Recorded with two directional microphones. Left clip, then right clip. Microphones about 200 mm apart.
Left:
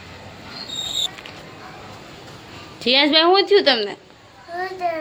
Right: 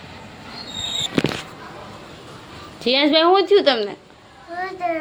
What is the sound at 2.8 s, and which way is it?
A woman's voice, centre (ahead or behind).